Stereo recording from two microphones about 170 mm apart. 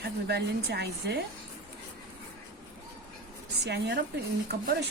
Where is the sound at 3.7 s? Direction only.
90° right.